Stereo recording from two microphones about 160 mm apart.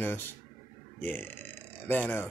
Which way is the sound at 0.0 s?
15° left (ahead or behind).